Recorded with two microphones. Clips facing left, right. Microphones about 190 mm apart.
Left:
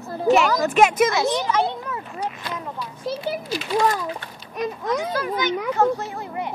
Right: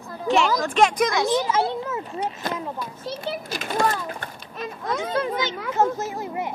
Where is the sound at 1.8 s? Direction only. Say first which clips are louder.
Right 2 dB; 25° right (ahead or behind).